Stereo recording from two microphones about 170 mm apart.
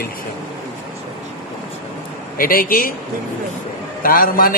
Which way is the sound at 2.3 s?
55° left (ahead or behind).